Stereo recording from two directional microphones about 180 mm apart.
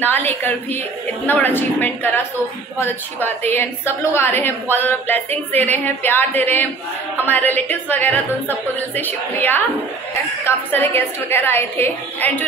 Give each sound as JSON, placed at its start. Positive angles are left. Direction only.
{"t": 0.0, "sound": "a woman's voice", "side_deg": 10}